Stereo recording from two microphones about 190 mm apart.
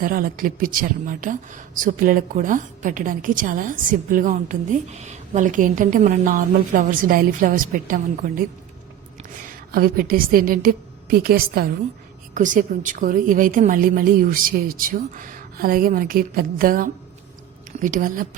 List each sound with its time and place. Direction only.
0.0 s a woman's voice: 50° right (ahead or behind)
9.7 s a woman's voice: 50° right (ahead or behind)